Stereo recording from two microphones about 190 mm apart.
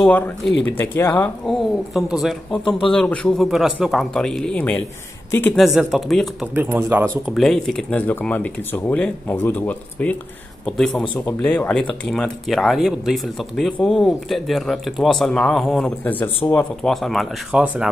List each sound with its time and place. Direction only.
0.5 s speech: 70° left (ahead or behind)
0.7 s speech: 10° left (ahead or behind)
6.5 s speech: 10° right (ahead or behind)
7.3 s speech: centre (ahead or behind)